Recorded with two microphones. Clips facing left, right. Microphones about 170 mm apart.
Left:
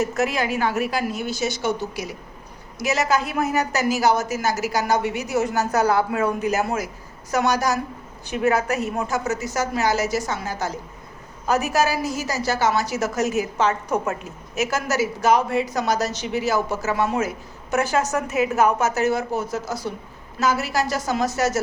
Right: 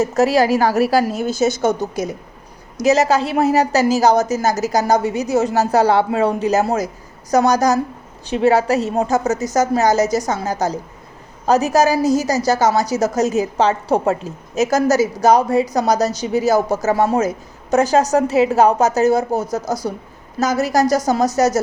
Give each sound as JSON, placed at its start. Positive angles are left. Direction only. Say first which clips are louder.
{"t": 0.0, "sound": "a woman's voice", "louder": "right 8 dB", "side_deg": -35}
{"t": 2.9, "sound": "a woman's voice", "louder": "right 6 dB", "side_deg": -35}